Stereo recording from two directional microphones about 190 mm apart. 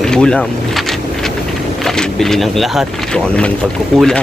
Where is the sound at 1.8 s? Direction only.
Centre (ahead or behind).